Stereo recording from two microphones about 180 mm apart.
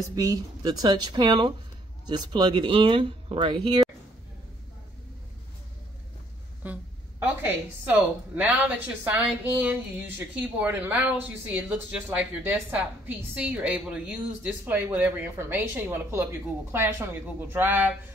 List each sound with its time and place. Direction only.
0.1 s speech: 20° right (ahead or behind)
6.6 s a sound: 10° right (ahead or behind)
7.4 s a woman's voice: 10° right (ahead or behind)